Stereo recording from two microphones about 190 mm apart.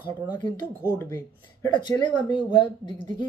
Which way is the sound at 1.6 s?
25° left (ahead or behind).